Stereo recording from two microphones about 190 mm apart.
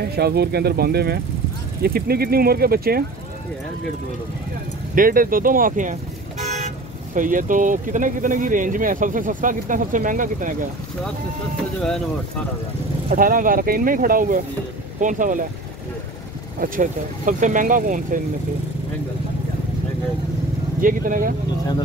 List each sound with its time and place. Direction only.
0.1 s speech: 55° right (ahead or behind)
4.9 s speech: 45° right (ahead or behind)
7.2 s speech: 45° right (ahead or behind)
13.1 s speech: 45° right (ahead or behind)
16.5 s speech: 45° right (ahead or behind)
20.8 s speech: 45° right (ahead or behind)